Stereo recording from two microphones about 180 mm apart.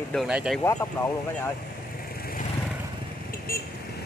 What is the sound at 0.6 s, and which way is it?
Speech, 15° left (ahead or behind).